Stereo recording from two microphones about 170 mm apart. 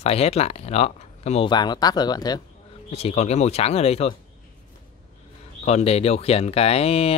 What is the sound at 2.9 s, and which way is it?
Speech, 35° left (ahead or behind).